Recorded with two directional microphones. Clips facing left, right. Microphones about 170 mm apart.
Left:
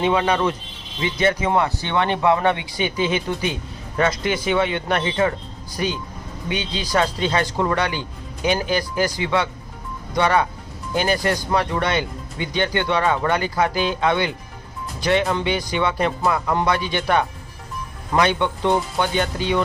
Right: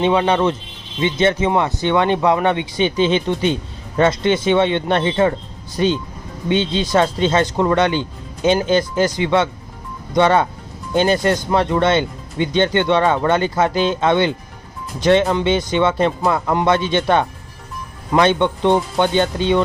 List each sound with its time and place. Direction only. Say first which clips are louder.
0.0 s speech: right 3 dB; 25° right (ahead or behind)